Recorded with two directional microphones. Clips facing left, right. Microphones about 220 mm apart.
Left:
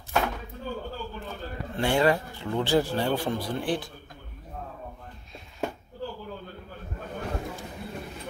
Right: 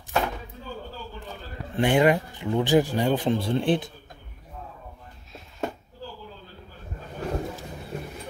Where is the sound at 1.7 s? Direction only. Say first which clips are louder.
Right 3 dB; 20° right (ahead or behind).